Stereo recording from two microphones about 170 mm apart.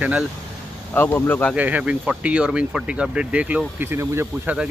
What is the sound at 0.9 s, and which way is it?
Speech, 10° left (ahead or behind).